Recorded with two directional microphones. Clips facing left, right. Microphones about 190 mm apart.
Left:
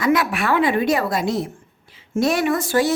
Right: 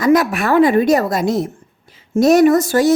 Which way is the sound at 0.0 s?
40° right (ahead or behind).